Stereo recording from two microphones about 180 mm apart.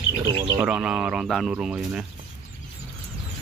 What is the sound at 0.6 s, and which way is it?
Speech, 5° right (ahead or behind).